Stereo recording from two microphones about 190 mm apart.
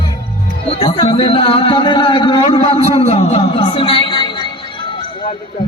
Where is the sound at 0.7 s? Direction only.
30° left (ahead or behind).